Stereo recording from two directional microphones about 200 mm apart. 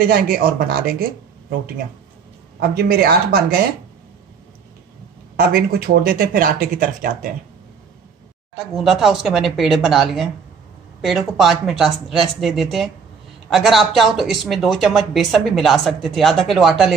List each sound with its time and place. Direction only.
0.0 s speech: 45° right (ahead or behind)
2.6 s speech: 50° right (ahead or behind)
5.3 s speech: 50° right (ahead or behind)
8.5 s speech: centre (ahead or behind)